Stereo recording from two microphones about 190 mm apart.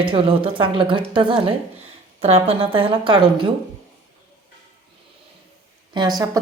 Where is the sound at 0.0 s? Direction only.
25° right (ahead or behind).